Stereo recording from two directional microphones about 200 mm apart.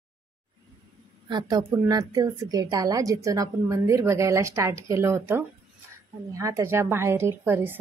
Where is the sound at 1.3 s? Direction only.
20° right (ahead or behind).